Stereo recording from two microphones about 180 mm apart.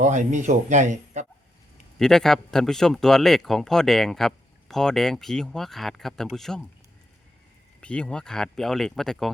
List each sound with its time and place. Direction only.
0.0 s speech: 40° right (ahead or behind)
2.0 s speech: 5° left (ahead or behind)
7.8 s speech: 5° left (ahead or behind)